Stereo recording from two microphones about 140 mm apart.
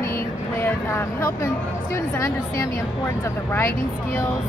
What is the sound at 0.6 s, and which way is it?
Speech, 20° left (ahead or behind).